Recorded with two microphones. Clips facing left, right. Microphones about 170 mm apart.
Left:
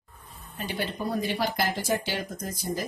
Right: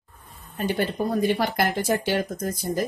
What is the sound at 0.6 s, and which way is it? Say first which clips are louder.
Speech: right 7 dB; 50° right (ahead or behind).